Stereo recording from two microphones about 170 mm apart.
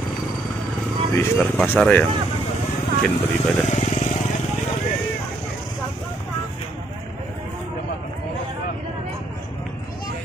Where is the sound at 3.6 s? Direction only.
45° left (ahead or behind).